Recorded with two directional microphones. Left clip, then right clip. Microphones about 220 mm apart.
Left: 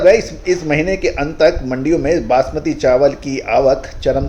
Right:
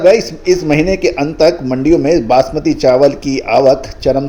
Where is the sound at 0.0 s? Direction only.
30° right (ahead or behind).